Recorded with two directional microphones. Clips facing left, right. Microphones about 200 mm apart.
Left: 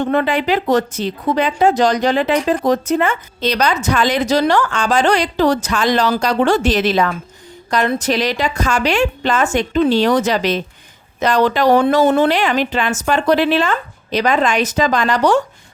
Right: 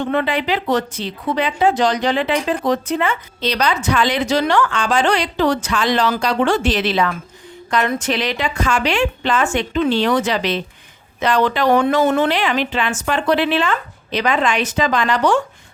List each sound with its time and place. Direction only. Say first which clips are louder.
0.0 s a woman's voice: left 3 dB; 45° left (ahead or behind)